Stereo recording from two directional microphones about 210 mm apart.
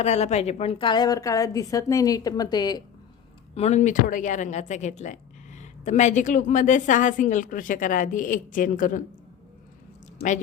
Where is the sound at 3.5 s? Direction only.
30° left (ahead or behind).